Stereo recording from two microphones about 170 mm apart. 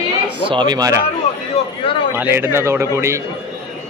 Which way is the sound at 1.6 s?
40° left (ahead or behind).